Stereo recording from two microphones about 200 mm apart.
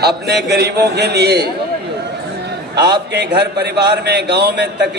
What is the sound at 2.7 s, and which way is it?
A man's voice, 55° right (ahead or behind).